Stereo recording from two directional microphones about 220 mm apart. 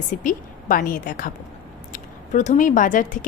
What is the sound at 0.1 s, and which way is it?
Speech, 35° left (ahead or behind).